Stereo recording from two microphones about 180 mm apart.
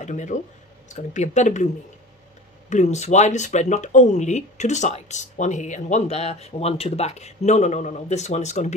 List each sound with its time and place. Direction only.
0.0 s speech: 40° left (ahead or behind)
2.7 s speech: 40° left (ahead or behind)